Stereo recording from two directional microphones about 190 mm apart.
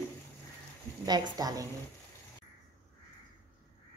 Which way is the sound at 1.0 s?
20° right (ahead or behind).